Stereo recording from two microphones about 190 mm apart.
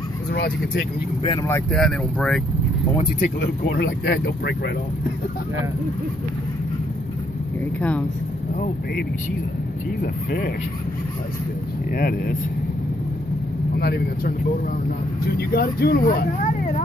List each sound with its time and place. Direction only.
1.5 s speech: 5° left (ahead or behind)
3.2 s speech: 60° left (ahead or behind)
11.9 s speech: 50° left (ahead or behind)
13.7 s speech: 55° left (ahead or behind)
15.3 s speech: 55° left (ahead or behind)